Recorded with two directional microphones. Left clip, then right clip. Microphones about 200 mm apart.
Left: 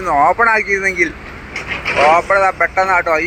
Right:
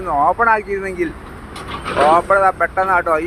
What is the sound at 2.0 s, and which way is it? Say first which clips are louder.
Speech: left 1 dB; 5° right (ahead or behind).